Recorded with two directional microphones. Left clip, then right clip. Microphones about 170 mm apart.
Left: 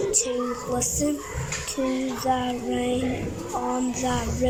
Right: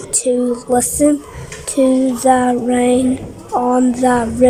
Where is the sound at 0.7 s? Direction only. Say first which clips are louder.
Right 14 dB; 90° right.